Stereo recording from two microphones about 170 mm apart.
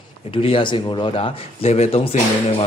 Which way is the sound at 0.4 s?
30° left (ahead or behind).